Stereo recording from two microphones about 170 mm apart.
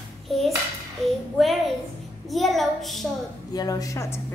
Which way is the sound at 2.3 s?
Centre (ahead or behind).